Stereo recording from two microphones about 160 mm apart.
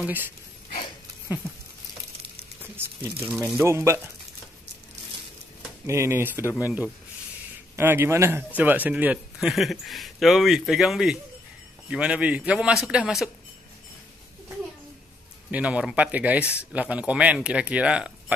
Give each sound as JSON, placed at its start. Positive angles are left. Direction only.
{"t": 0.0, "sound": "speech", "side_deg": -10}
{"t": 2.6, "sound": "crumpling", "side_deg": -15}
{"t": 3.3, "sound": "speech", "side_deg": -15}
{"t": 5.9, "sound": "speech", "side_deg": -15}
{"t": 15.5, "sound": "speech", "side_deg": -10}